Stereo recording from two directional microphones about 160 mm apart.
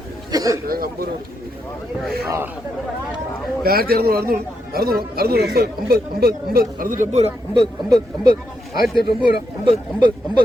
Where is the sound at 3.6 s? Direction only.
70° right (ahead or behind); by 7.3 s 45° right (ahead or behind).